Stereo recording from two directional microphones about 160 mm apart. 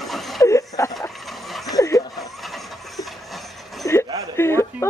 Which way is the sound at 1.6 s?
20° left (ahead or behind).